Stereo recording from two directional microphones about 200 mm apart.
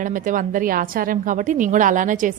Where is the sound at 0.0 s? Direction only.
40° right (ahead or behind).